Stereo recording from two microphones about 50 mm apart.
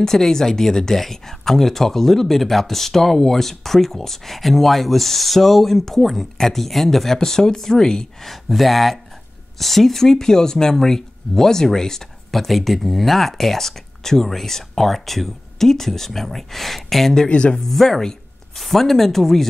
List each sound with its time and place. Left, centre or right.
0.0 s speech: centre
8.3 s speech: centre
17.6 s speech: centre